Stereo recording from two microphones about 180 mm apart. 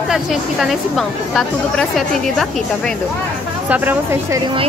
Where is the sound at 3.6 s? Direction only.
10° right (ahead or behind).